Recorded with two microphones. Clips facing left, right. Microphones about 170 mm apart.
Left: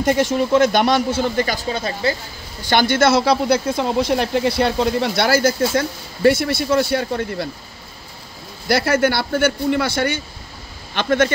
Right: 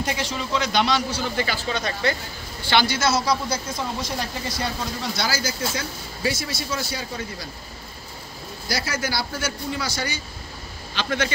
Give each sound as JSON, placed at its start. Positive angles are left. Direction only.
{"t": 0.0, "sound": "a man's voice", "side_deg": 50}
{"t": 2.7, "sound": "speech", "side_deg": 50}
{"t": 8.6, "sound": "a man's voice", "side_deg": 60}